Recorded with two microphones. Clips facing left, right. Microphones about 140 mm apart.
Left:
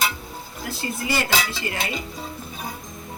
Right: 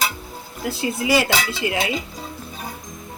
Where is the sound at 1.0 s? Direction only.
90° right.